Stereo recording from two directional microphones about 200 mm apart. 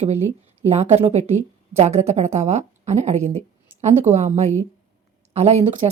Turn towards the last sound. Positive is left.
turn(degrees=-25)  # may be behind; listen again after turning